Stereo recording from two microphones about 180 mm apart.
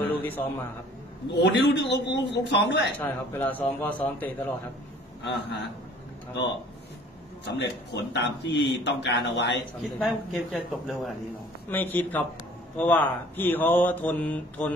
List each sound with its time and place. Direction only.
0.1 s a man's voice: 10° left (ahead or behind)
1.4 s a man's voice: 75° left (ahead or behind)
3.0 s speech: 10° left (ahead or behind)
5.2 s a man's voice: 65° left (ahead or behind)
7.4 s a man's voice: 75° left (ahead or behind)
9.8 s a man's voice: centre (ahead or behind)